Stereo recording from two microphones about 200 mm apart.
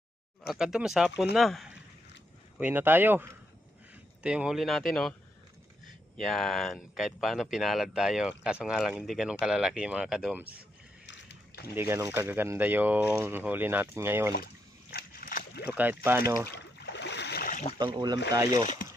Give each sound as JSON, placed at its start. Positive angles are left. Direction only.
{"t": 0.4, "sound": "speech", "side_deg": 0}
{"t": 6.1, "sound": "speech", "side_deg": 0}
{"t": 11.0, "sound": "a sound", "side_deg": 60}
{"t": 11.7, "sound": "speech", "side_deg": -10}
{"t": 14.8, "sound": "slosh", "side_deg": 50}
{"t": 15.6, "sound": "speech", "side_deg": -10}
{"t": 16.5, "sound": "a sound", "side_deg": 60}
{"t": 17.7, "sound": "speech", "side_deg": -20}